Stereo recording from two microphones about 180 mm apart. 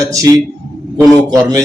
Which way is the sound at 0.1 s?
15° right (ahead or behind).